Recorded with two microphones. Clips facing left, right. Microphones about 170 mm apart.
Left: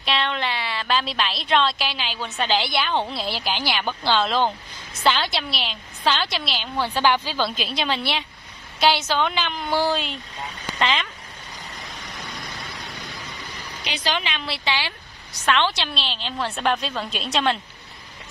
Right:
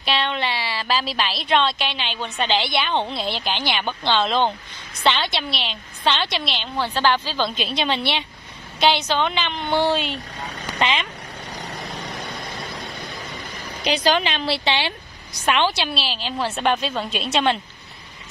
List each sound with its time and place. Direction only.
0.0 s a woman's voice: centre (ahead or behind)
7.4 s a woman's voice: centre (ahead or behind)
13.8 s a woman's voice: 40° right (ahead or behind); by 15.0 s 25° right (ahead or behind)
15.4 s a woman's voice: 15° right (ahead or behind)